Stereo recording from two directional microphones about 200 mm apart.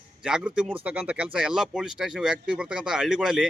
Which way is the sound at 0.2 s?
5° right (ahead or behind).